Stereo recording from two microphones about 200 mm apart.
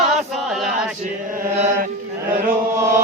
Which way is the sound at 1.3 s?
40° right (ahead or behind).